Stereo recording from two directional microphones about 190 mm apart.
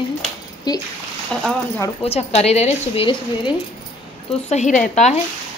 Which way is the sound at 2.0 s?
35° left (ahead or behind).